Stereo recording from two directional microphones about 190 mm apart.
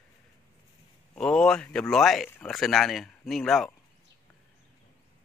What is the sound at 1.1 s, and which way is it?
A man's voice, 5° left (ahead or behind).